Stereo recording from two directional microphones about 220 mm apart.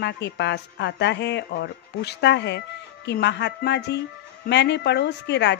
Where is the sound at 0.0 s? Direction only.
50° left (ahead or behind).